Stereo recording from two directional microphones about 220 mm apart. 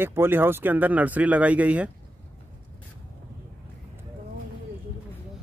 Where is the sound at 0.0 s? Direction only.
10° right (ahead or behind).